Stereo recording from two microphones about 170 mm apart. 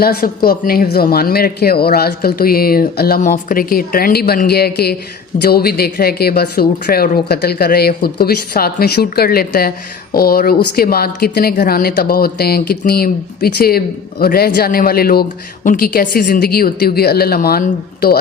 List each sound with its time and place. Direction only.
0.0 s speech: 60° left (ahead or behind)